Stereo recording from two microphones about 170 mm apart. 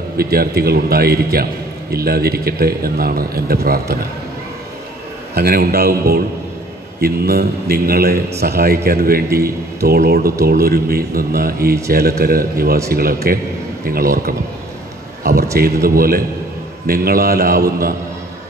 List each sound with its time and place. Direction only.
0.2 s a man's voice: 65° right (ahead or behind)
5.3 s a man's voice: 65° right (ahead or behind)
15.5 s a man's voice: 60° right (ahead or behind)